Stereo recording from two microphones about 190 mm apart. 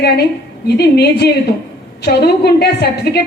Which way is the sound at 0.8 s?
60° left (ahead or behind).